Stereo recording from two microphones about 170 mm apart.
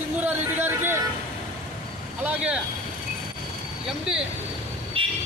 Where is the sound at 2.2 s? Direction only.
10° right (ahead or behind).